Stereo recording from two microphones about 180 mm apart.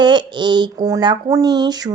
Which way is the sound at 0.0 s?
25° right (ahead or behind).